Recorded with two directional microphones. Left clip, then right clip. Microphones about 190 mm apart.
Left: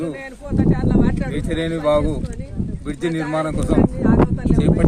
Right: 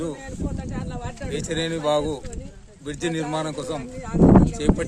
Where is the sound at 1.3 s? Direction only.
15° right (ahead or behind).